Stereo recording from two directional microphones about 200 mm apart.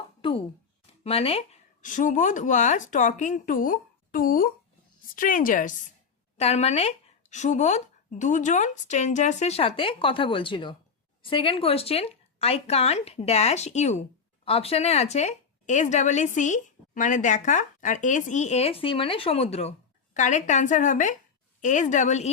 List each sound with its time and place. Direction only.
0.2 s a sound: 25° left (ahead or behind)
1.0 s speech: 30° left (ahead or behind)
6.3 s speech: 30° left (ahead or behind)